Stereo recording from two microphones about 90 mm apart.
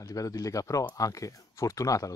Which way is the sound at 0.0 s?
40° left (ahead or behind).